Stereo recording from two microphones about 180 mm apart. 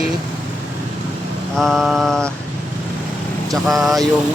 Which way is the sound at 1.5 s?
Centre (ahead or behind).